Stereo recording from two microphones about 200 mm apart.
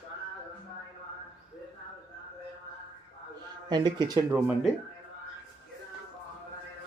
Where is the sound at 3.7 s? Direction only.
20° right (ahead or behind).